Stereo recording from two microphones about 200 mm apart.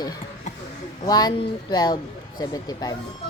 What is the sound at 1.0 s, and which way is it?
Speech, 20° left (ahead or behind).